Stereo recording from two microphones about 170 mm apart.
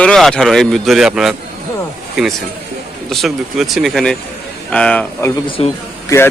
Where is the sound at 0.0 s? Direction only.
5° left (ahead or behind).